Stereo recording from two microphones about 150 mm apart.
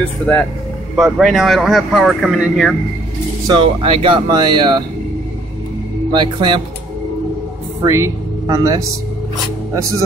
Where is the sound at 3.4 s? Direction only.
30° right (ahead or behind).